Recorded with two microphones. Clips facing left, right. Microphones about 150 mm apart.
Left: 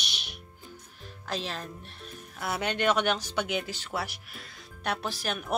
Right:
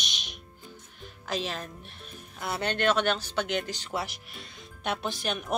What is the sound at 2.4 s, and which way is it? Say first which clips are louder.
Speech: even; 10° left (ahead or behind).